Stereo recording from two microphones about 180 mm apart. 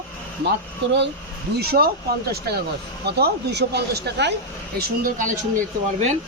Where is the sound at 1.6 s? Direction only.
60° right (ahead or behind).